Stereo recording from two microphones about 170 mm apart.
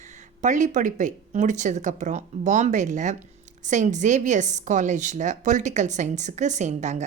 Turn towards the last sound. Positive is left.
turn(degrees=-45)  # may be behind; listen again after turning